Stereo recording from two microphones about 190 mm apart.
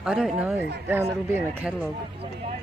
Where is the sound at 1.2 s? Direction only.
10° right (ahead or behind).